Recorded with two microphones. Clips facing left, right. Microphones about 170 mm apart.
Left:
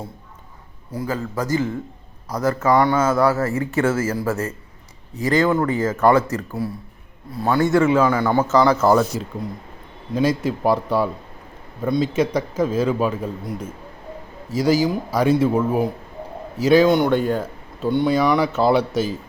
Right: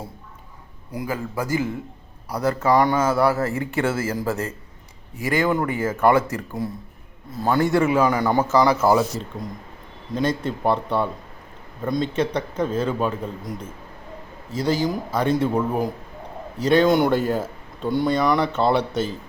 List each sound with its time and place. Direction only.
0.9 s speech: 15° right (ahead or behind)
10.2 s a man's voice: 5° left (ahead or behind)
12.1 s a man's voice: 10° left (ahead or behind)
14.5 s a man's voice: 10° left (ahead or behind)